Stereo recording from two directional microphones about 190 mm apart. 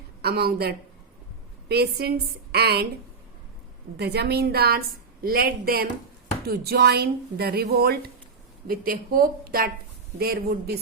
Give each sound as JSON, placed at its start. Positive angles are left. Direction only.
{"t": 0.2, "sound": "speech", "side_deg": -55}
{"t": 3.9, "sound": "a woman's voice", "side_deg": -60}